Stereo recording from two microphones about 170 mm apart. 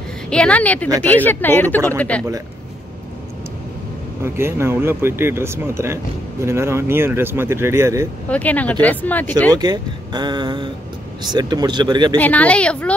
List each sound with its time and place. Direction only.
0.3 s speech: 5° left (ahead or behind)
4.2 s speech: 15° right (ahead or behind)
8.3 s speech: 10° left (ahead or behind)
9.5 s speech: 25° right (ahead or behind)
12.2 s speech: 10° left (ahead or behind)